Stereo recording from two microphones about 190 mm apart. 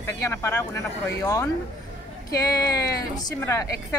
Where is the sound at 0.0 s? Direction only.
15° left (ahead or behind).